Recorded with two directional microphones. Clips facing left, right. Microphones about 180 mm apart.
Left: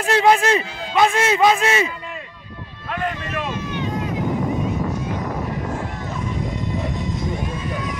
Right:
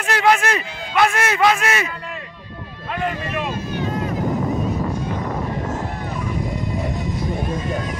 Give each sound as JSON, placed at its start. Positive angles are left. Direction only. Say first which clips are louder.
{"t": 0.0, "sound": "a man's voice", "louder": "left 2 dB", "side_deg": 25}
{"t": 2.9, "sound": "speech", "louder": "right 1 dB", "side_deg": -10}